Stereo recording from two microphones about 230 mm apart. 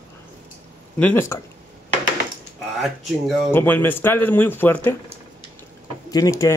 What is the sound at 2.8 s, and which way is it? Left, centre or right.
A man's voice, centre.